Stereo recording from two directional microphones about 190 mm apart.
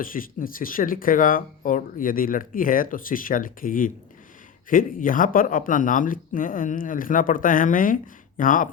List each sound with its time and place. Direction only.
0.0 s speech: 45° left (ahead or behind)